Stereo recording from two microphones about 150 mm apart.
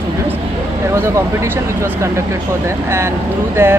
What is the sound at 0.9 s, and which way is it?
Speech, 15° right (ahead or behind).